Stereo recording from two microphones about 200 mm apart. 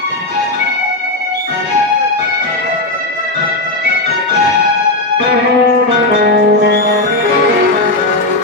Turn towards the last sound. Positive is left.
turn(degrees=-50)  # may be behind; listen again after turning